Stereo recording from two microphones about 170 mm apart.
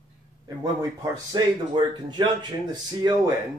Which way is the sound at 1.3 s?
25° right (ahead or behind).